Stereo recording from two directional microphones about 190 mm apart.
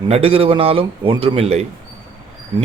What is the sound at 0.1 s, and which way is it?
Speech, 30° right (ahead or behind).